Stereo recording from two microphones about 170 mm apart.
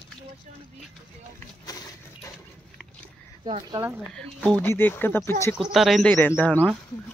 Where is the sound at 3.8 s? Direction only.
10° right (ahead or behind).